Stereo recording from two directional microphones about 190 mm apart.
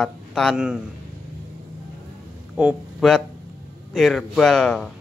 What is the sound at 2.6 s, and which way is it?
Speech, 5° right (ahead or behind).